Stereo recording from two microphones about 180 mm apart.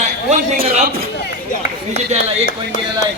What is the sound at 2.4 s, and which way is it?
Music, 45° left (ahead or behind).